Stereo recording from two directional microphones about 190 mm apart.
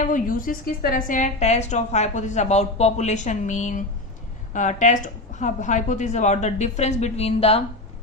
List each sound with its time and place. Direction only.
0.0 s a woman's voice: 45° left (ahead or behind)